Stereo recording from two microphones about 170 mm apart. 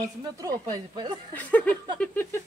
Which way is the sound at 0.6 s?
25° right (ahead or behind).